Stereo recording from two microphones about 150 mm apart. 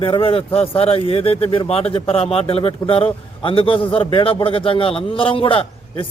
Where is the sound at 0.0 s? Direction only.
40° left (ahead or behind).